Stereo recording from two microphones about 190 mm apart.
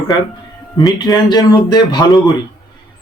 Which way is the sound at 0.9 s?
20° left (ahead or behind).